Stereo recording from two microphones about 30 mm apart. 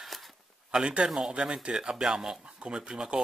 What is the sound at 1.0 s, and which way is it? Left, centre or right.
Speech, centre.